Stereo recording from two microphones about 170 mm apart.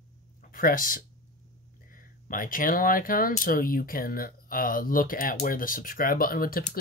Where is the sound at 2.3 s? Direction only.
55° left (ahead or behind).